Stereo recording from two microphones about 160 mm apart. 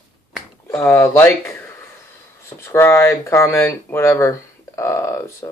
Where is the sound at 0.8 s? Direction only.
15° left (ahead or behind).